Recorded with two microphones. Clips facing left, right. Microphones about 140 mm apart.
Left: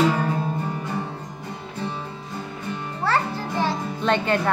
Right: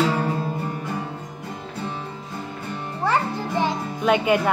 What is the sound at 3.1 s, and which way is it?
Music, 15° right (ahead or behind).